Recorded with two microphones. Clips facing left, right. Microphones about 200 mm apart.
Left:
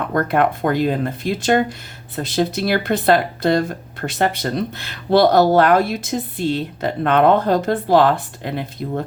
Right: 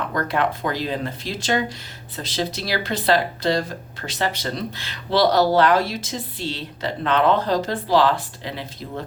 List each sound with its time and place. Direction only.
0.1 s speech: 55° left (ahead or behind)